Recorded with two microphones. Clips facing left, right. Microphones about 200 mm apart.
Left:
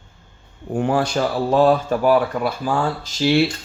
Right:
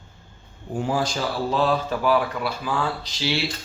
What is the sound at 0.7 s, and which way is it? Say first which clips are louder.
Speech: left 5 dB; 60° left (ahead or behind).